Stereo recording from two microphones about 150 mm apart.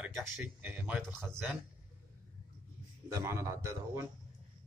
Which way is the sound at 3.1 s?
20° right (ahead or behind).